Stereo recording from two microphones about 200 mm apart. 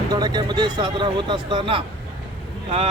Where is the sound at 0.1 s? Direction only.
20° right (ahead or behind).